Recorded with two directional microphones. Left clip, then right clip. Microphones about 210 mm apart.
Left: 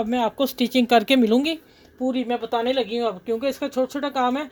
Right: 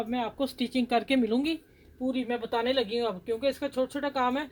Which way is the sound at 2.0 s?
30° left (ahead or behind).